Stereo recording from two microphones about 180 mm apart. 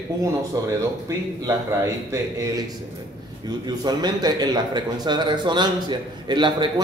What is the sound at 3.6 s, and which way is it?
A man's voice, 20° right (ahead or behind).